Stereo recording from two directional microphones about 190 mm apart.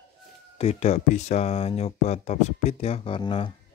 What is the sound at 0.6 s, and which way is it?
Speech, 35° left (ahead or behind).